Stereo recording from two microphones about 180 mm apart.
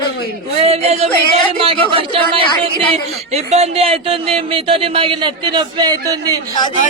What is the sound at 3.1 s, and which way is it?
A man's voice, 35° right (ahead or behind).